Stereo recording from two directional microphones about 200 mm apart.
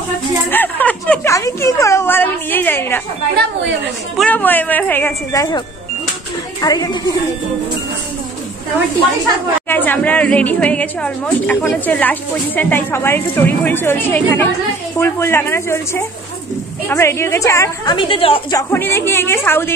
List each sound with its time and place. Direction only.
0.5 s a sound: 10° left (ahead or behind)
4.2 s a woman's voice: 10° left (ahead or behind)
6.6 s a woman's voice: 20° left (ahead or behind)
9.7 s a woman's voice: 10° left (ahead or behind); by 18.6 s 25° left (ahead or behind)
18.6 s a woman's voice: 10° left (ahead or behind)